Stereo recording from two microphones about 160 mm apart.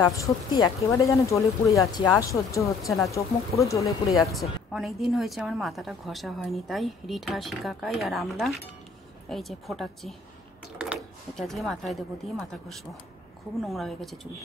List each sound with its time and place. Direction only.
0.0 s speech: 20° left (ahead or behind)
4.1 s a woman's voice: centre (ahead or behind)